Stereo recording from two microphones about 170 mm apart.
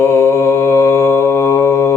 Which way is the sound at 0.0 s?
15° left (ahead or behind).